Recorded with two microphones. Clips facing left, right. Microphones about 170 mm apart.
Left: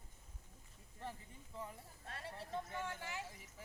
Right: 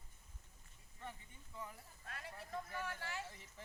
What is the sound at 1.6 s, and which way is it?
Speech, 30° left (ahead or behind).